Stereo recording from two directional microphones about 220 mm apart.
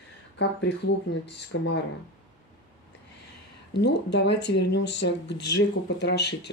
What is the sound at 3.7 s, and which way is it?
Speech, 50° left (ahead or behind).